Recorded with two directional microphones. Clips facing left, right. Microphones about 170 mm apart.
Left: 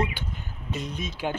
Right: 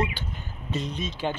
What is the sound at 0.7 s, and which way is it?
Speech, 10° left (ahead or behind).